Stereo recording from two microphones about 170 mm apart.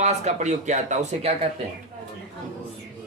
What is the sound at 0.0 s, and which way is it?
A man's voice, 40° right (ahead or behind).